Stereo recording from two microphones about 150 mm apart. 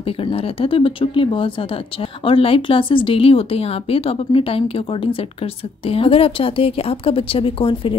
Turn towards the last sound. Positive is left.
turn(degrees=35)  # may be behind; listen again after turning